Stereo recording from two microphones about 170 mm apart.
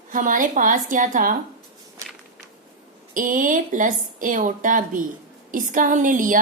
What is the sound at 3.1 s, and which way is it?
Speech, 50° right (ahead or behind).